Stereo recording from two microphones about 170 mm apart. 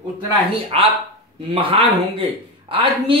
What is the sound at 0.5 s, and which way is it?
A man's voice, 35° right (ahead or behind).